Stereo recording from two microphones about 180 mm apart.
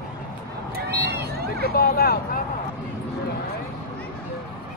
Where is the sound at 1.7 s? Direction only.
55° left (ahead or behind).